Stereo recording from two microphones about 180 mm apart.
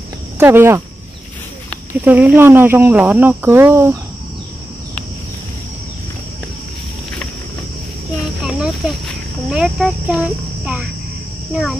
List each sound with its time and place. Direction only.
0.4 s speech: 10° right (ahead or behind)
2.0 s speech: 10° right (ahead or behind)
8.5 s cricket: 5° right (ahead or behind)